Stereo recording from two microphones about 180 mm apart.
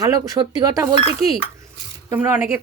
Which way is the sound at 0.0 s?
20° right (ahead or behind).